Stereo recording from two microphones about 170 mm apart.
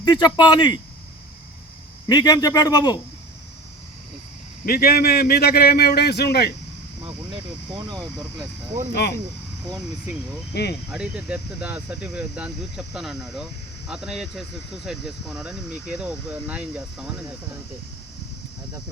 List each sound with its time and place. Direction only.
0.0 s a man's voice: 25° left (ahead or behind)
2.0 s a man's voice: 25° left (ahead or behind)
4.6 s a man's voice: 60° left (ahead or behind)
7.8 s speech: 25° right (ahead or behind)
8.9 s a man's voice: 75° left (ahead or behind)
10.5 s a man's voice: 75° left (ahead or behind)
10.9 s speech: 5° right (ahead or behind)